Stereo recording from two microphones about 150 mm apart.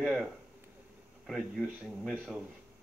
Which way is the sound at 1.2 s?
Centre (ahead or behind).